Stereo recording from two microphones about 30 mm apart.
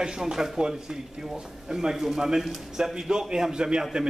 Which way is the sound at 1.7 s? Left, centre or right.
Centre.